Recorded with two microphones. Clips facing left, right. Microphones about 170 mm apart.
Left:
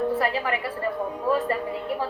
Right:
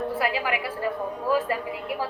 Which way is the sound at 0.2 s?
5° right (ahead or behind).